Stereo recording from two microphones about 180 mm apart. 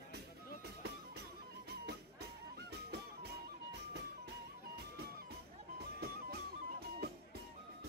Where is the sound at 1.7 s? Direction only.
65° right (ahead or behind).